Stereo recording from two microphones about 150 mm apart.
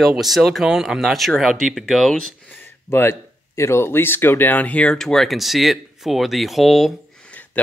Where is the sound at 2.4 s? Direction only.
15° left (ahead or behind).